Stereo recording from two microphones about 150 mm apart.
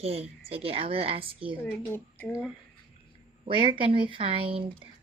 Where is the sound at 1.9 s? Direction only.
15° left (ahead or behind).